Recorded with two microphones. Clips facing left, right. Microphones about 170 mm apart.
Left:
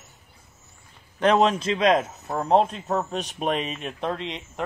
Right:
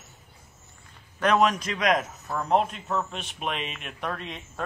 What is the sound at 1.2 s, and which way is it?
A man's voice, 30° left (ahead or behind).